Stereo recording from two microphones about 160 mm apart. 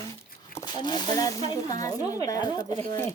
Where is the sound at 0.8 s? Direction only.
25° left (ahead or behind).